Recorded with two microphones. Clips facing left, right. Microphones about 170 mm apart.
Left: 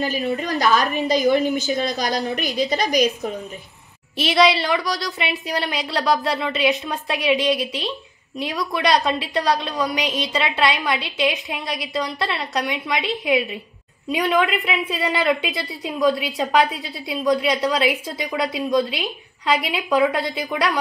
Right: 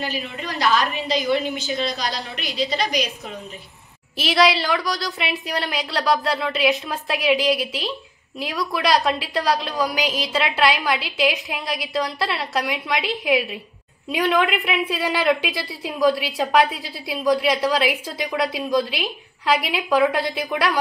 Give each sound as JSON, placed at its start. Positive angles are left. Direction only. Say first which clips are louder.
{"t": 0.0, "sound": "a woman's voice", "louder": "left 6 dB", "side_deg": 45}
{"t": 4.2, "sound": "a woman's voice", "louder": "left 1 dB", "side_deg": 0}